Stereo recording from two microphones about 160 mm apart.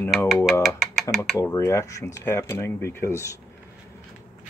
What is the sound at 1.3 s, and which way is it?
Speech, 20° left (ahead or behind).